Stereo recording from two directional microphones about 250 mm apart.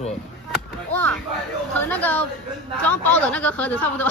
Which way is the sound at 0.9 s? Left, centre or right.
Centre.